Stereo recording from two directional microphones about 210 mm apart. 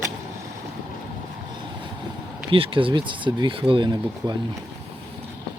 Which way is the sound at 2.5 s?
25° right (ahead or behind).